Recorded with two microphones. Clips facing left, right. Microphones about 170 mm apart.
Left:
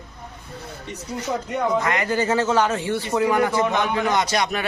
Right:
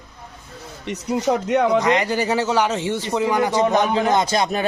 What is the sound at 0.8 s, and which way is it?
Speech, 75° right (ahead or behind).